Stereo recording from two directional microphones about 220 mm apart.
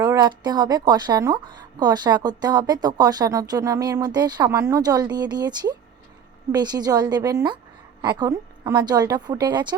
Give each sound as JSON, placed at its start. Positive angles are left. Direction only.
{"t": 0.0, "sound": "a woman's voice", "side_deg": -15}